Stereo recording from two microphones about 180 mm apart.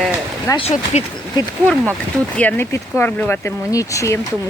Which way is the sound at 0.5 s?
35° left (ahead or behind).